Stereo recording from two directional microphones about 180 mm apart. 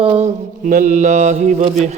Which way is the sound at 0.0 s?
30° right (ahead or behind).